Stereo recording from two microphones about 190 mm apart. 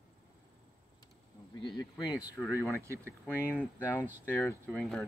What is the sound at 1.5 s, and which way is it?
Speech, 20° left (ahead or behind).